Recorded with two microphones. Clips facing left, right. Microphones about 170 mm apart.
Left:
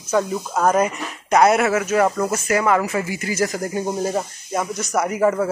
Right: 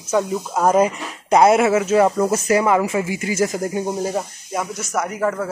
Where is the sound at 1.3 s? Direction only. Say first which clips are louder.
Right 2 dB; 25° right (ahead or behind).